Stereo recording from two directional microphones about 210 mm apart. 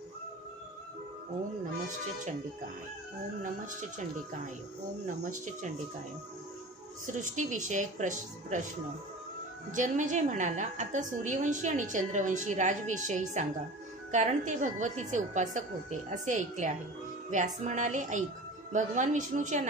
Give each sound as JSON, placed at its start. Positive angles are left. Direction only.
{"t": 5.0, "sound": "a woman's voice", "side_deg": -40}
{"t": 7.1, "sound": "a woman's voice", "side_deg": -35}
{"t": 9.7, "sound": "a woman's voice", "side_deg": -35}